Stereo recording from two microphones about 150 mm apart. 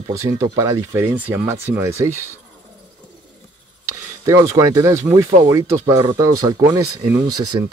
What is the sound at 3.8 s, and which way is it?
Speech, 20° right (ahead or behind).